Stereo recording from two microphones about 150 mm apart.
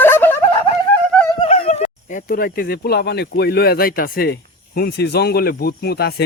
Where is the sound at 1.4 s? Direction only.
40° left (ahead or behind); by 6.2 s 90° left.